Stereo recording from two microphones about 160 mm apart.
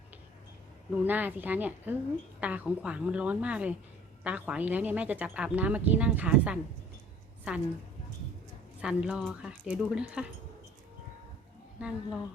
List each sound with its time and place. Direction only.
1.0 s speech: 10° right (ahead or behind)
8.8 s speech: 5° right (ahead or behind)
11.8 s speech: 5° right (ahead or behind)